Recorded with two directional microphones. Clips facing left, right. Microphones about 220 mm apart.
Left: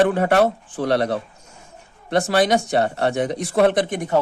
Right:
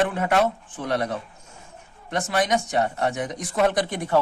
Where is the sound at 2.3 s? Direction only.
35° left (ahead or behind).